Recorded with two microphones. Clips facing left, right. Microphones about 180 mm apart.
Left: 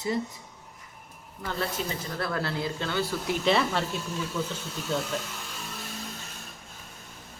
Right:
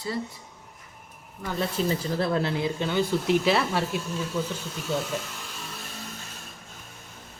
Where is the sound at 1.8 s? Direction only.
35° right (ahead or behind).